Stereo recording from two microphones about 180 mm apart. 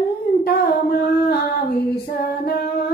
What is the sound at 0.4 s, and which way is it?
Humming, 60° left (ahead or behind).